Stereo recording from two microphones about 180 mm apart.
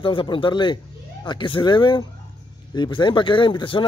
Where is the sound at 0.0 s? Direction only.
30° left (ahead or behind).